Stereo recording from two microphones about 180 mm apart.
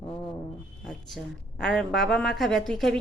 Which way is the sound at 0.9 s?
5° left (ahead or behind).